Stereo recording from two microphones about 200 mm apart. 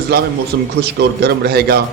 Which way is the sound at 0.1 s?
50° right (ahead or behind).